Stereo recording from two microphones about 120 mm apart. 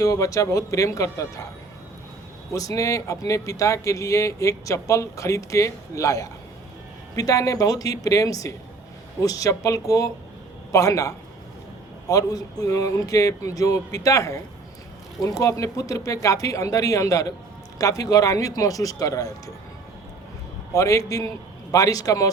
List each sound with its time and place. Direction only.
0.0 s speech: 25° left (ahead or behind)
2.5 s speech: 25° left (ahead or behind)
20.7 s speech: 25° left (ahead or behind)